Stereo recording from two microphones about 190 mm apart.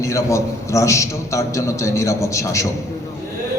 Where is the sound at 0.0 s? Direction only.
15° left (ahead or behind).